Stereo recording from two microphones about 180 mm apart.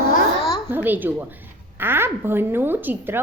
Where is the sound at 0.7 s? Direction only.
10° right (ahead or behind).